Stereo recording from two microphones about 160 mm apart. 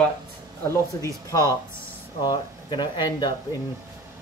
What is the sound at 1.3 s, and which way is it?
Speech, 25° left (ahead or behind).